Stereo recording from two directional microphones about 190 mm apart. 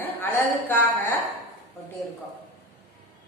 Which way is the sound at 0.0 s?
10° left (ahead or behind).